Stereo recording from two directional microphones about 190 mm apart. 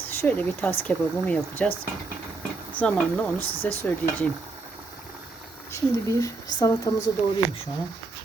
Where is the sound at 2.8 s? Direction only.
5° left (ahead or behind).